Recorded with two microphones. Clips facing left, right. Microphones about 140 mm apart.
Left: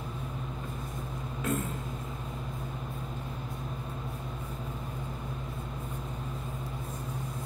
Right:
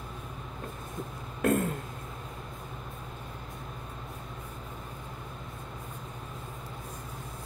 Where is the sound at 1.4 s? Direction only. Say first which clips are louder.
Right 6 dB; 60° right (ahead or behind).